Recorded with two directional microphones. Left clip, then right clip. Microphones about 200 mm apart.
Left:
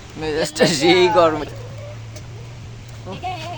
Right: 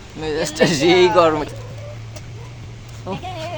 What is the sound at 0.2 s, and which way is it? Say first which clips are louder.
Speech: even; centre (ahead or behind).